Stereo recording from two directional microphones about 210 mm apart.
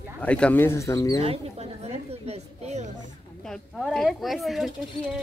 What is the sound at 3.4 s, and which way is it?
Speech, centre (ahead or behind).